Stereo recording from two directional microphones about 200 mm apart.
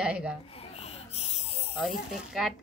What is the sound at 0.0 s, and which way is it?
Speech, 5° right (ahead or behind).